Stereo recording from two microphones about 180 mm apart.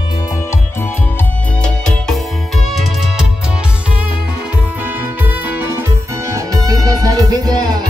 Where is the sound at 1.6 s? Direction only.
5° left (ahead or behind).